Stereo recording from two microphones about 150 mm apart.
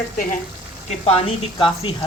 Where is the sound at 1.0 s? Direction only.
40° left (ahead or behind).